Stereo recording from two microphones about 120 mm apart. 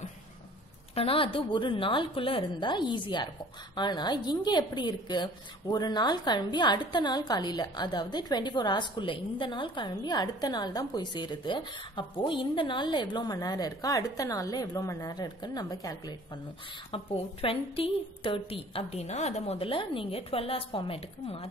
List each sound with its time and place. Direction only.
0.9 s a woman's voice: 50° left (ahead or behind); by 16.2 s 30° left (ahead or behind)
17.4 s a woman's voice: 50° left (ahead or behind)